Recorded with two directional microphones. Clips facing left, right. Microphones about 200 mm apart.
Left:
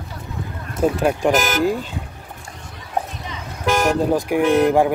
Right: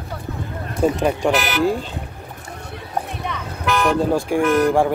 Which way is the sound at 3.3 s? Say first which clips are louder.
Right 4 dB; 60° right (ahead or behind).